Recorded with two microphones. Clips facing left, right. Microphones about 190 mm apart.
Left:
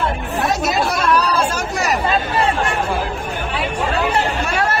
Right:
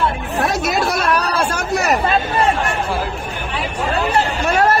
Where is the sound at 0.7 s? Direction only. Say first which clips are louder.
Even; 55° right (ahead or behind).